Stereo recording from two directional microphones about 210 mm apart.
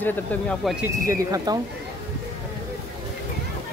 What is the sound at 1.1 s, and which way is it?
Speech, 15° right (ahead or behind).